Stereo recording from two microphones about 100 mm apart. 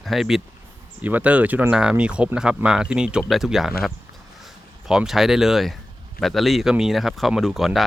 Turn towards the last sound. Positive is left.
turn(degrees=0)  # may be behind; listen again after turning